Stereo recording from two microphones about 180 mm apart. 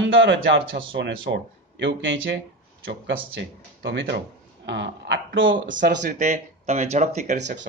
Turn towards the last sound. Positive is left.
turn(degrees=-40)  # may be behind; listen again after turning